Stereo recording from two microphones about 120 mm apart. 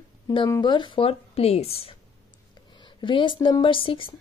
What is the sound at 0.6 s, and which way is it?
Speech, 40° left (ahead or behind).